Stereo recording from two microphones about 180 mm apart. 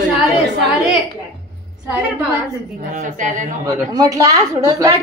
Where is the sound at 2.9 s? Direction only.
45° right (ahead or behind).